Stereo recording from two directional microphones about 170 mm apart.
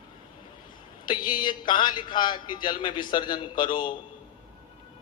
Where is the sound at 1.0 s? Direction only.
25° left (ahead or behind).